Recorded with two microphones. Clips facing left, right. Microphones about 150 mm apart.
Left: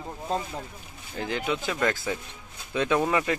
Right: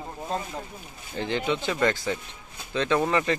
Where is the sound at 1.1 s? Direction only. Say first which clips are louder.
Right 2 dB; 5° left (ahead or behind).